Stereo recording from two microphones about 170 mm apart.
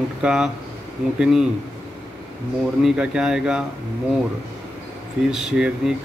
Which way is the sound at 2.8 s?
5° right (ahead or behind).